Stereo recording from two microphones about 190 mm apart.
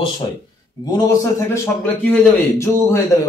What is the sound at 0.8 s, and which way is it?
A man's voice, 20° left (ahead or behind).